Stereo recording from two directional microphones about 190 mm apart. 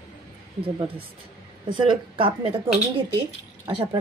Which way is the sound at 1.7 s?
25° right (ahead or behind).